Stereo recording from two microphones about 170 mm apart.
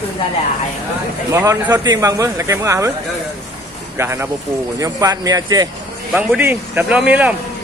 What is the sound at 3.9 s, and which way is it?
A man's voice, 15° right (ahead or behind).